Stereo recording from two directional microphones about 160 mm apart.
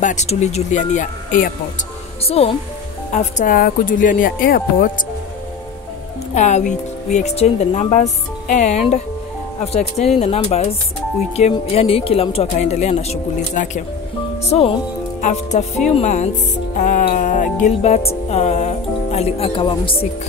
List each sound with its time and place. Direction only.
0.0 s speech: 45° left (ahead or behind)
2.2 s speech: 40° left (ahead or behind)
3.2 s speech: 55° left (ahead or behind)
6.3 s speech: 50° left (ahead or behind)
15.2 s speech: 50° left (ahead or behind); by 20.1 s 35° left (ahead or behind)